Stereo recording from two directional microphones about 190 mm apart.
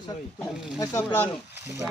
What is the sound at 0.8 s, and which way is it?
Speech, 15° left (ahead or behind).